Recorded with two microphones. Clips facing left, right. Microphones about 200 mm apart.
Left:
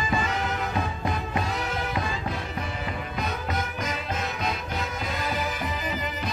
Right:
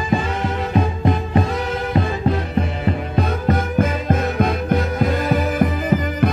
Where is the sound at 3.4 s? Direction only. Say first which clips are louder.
Right 12 dB; 55° right (ahead or behind).